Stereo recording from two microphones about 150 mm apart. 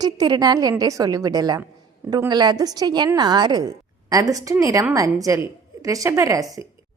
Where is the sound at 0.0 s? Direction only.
25° right (ahead or behind).